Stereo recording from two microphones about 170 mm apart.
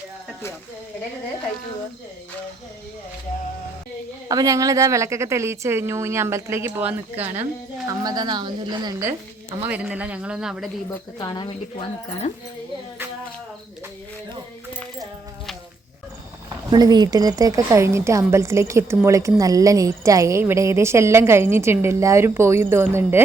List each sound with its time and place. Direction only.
4.3 s a woman's voice: 20° right (ahead or behind)
8.0 s a woman's voice: 25° right (ahead or behind)
9.6 s a woman's voice: 10° right (ahead or behind)
11.2 s speech: 25° left (ahead or behind)
16.7 s a woman's voice: 25° right (ahead or behind)